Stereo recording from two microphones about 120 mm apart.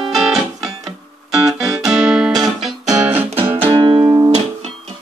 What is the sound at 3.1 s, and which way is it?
Music, 20° right (ahead or behind).